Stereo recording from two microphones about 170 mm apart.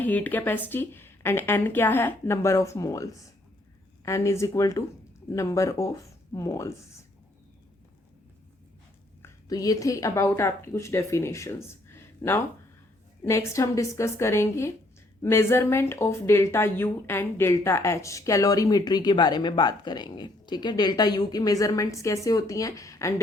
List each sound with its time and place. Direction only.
0.0 s a woman's voice: 10° left (ahead or behind)
9.2 s a woman's voice: 20° left (ahead or behind)